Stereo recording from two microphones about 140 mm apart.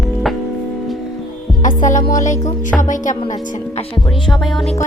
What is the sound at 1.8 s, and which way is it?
Music, 65° left (ahead or behind).